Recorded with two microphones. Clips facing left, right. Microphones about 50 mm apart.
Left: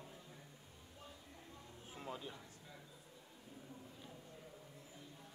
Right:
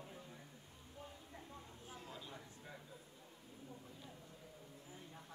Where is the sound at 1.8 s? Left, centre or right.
Left.